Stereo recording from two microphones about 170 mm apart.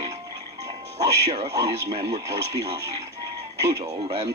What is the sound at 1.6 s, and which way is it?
Speech, 40° right (ahead or behind).